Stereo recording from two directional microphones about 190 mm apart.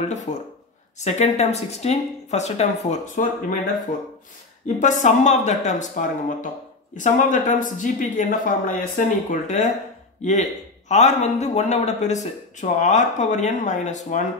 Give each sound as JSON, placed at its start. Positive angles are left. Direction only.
{"t": 0.0, "sound": "a man's voice", "side_deg": 40}
{"t": 4.7, "sound": "a man's voice", "side_deg": 40}
{"t": 10.9, "sound": "a man's voice", "side_deg": 35}